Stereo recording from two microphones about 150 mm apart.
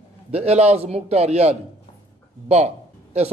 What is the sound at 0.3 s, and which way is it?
A man's voice, 45° right (ahead or behind).